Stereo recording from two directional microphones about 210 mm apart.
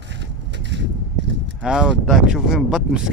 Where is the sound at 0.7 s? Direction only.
55° right (ahead or behind).